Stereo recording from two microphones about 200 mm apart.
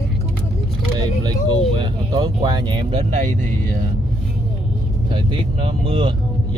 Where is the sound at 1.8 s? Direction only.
20° right (ahead or behind).